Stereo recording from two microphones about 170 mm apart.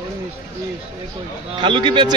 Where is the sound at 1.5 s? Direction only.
30° right (ahead or behind).